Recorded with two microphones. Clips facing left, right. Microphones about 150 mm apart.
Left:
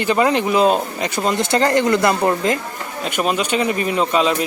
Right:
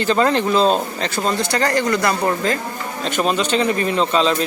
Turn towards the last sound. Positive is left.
turn(degrees=10)  # may be behind; listen again after turning